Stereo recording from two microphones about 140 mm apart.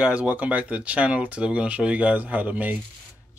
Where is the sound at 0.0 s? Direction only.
10° right (ahead or behind).